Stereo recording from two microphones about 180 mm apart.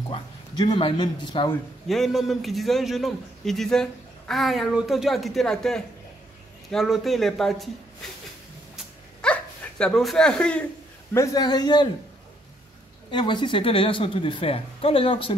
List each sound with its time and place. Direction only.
0.1 s speech: 25° left (ahead or behind)
1.9 s a man's voice: centre (ahead or behind)
9.2 s dog: 5° left (ahead or behind)
11.1 s speech: 20° left (ahead or behind)
13.1 s speech: 25° left (ahead or behind)